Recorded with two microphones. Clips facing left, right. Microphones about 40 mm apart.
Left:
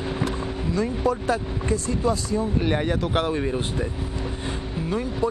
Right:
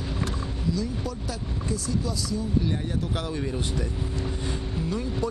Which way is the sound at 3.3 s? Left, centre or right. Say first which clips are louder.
Left 5 dB; left.